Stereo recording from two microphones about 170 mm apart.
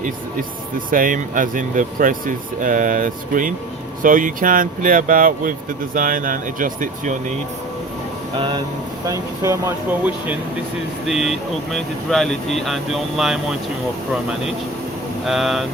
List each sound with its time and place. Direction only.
0.9 s speech: 55° right (ahead or behind)
8.4 s speech: 30° right (ahead or behind); by 10.3 s 10° right (ahead or behind)
11.0 s speech: centre (ahead or behind)
15.3 s speech: centre (ahead or behind)